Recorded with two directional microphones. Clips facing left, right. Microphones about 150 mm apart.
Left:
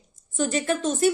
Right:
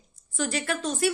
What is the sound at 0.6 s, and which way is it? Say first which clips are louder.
Speech: left 5 dB; 45° left (ahead or behind).